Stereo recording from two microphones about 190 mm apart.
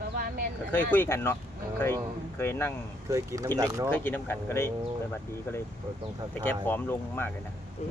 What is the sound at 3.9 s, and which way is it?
Speech, 10° left (ahead or behind).